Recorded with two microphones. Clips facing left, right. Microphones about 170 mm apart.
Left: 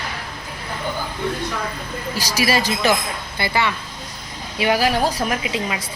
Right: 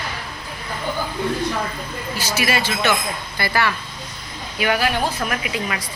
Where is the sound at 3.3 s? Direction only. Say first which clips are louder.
Even; 20° left (ahead or behind).